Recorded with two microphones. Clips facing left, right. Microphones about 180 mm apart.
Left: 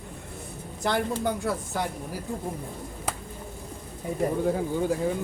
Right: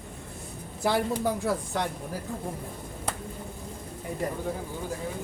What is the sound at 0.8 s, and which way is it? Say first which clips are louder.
Speech: even; 5° right (ahead or behind).